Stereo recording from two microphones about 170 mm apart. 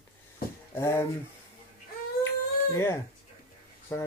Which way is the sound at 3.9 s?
15° left (ahead or behind).